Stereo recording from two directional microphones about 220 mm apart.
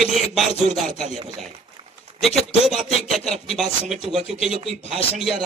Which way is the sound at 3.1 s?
Centre (ahead or behind).